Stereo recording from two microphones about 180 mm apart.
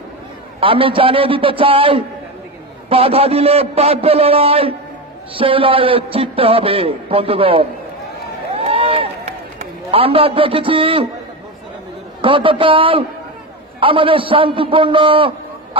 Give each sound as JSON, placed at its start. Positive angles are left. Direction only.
{"t": 0.6, "sound": "a man's voice", "side_deg": -30}
{"t": 8.5, "sound": "run", "side_deg": -30}
{"t": 9.8, "sound": "a man's voice", "side_deg": -30}
{"t": 12.2, "sound": "a man's voice", "side_deg": -30}